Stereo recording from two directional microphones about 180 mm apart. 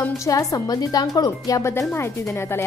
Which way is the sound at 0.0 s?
15° left (ahead or behind).